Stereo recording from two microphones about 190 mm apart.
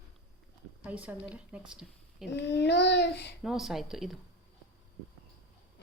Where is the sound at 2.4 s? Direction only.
65° left (ahead or behind).